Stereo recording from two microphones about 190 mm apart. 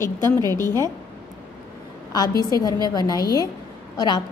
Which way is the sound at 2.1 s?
20° left (ahead or behind).